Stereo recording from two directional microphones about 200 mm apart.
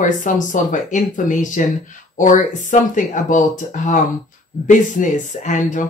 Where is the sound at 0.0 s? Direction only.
40° left (ahead or behind).